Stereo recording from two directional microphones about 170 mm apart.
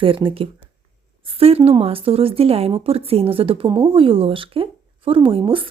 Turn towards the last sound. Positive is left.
turn(degrees=-30)  # may be behind; listen again after turning